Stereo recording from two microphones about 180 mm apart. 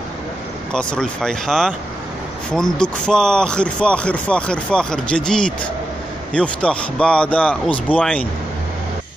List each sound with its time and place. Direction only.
0.7 s a man's voice: 5° left (ahead or behind)